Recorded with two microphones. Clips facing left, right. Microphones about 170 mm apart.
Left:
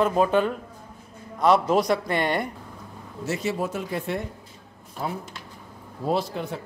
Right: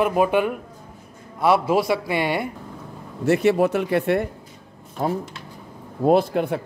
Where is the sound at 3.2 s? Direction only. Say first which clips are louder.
Right 10 dB; 65° right (ahead or behind).